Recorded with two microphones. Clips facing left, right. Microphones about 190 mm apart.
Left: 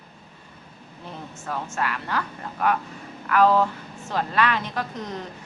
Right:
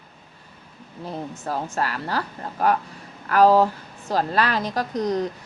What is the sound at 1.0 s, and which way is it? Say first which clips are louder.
A woman's voice: right 6 dB; 35° right (ahead or behind).